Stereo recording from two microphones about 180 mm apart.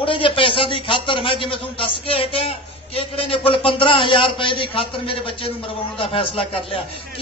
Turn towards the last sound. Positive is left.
turn(degrees=30)  # may be behind; listen again after turning